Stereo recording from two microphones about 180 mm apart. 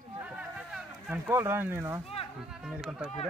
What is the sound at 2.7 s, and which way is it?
Speech, 5° right (ahead or behind).